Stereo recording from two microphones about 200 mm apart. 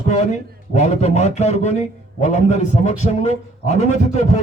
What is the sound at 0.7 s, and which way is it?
A man's voice, 35° left (ahead or behind).